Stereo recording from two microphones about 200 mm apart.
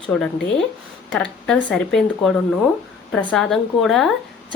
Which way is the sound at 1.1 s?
5° left (ahead or behind).